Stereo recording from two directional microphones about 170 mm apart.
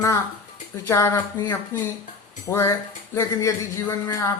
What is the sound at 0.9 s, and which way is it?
A man's voice, 15° left (ahead or behind).